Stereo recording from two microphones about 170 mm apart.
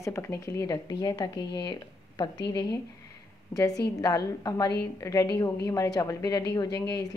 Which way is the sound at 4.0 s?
20° left (ahead or behind).